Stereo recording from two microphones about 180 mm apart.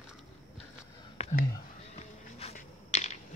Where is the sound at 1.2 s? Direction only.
35° left (ahead or behind).